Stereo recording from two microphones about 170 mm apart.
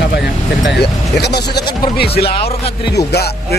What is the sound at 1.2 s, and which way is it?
Music, 75° left (ahead or behind).